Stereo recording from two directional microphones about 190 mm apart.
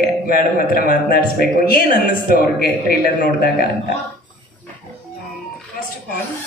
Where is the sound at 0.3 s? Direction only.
50° left (ahead or behind).